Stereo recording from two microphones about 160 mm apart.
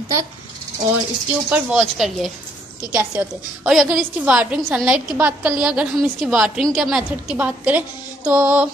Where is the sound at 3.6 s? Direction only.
5° right (ahead or behind).